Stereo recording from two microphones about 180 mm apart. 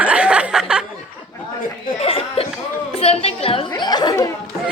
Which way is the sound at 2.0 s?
35° left (ahead or behind).